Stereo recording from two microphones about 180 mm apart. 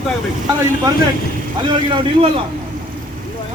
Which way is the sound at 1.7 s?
25° right (ahead or behind).